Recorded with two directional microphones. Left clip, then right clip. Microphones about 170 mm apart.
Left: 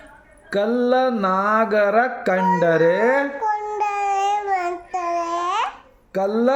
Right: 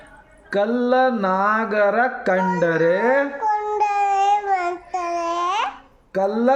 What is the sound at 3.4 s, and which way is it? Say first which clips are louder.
Child singing: right 2 dB; 5° right (ahead or behind).